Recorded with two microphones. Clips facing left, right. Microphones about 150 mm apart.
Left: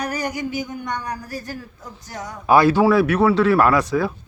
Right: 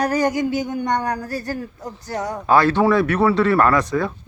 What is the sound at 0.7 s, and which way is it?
Speech, 85° right.